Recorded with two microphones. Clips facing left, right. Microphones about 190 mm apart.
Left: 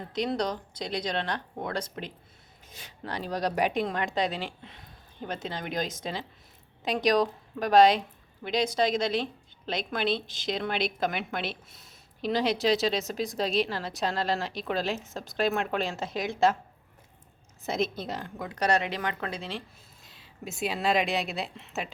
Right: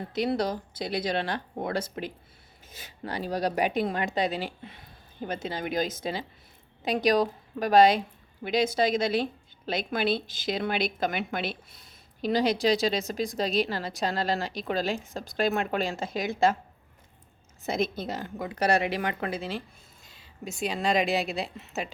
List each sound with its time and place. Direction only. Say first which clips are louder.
0.1 s a woman's voice: right 2 dB; 5° right (ahead or behind)
17.7 s a woman's voice: right 1 dB; centre (ahead or behind)